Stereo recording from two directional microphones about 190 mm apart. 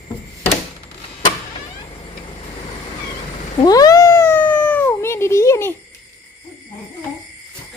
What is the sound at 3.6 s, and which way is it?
Cat, 20° left (ahead or behind).